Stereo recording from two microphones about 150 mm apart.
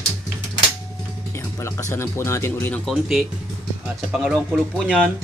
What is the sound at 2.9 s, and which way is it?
Speech, centre (ahead or behind).